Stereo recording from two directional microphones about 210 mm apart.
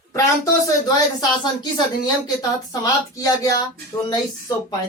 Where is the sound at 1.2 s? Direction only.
20° left (ahead or behind).